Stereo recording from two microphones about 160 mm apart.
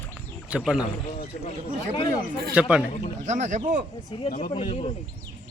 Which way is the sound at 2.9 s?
40° left (ahead or behind).